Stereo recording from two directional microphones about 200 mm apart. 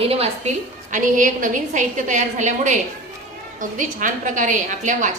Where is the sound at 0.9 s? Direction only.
40° right (ahead or behind).